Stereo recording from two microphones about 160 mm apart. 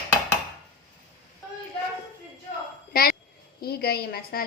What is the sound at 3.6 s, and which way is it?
Speech, 75° left (ahead or behind).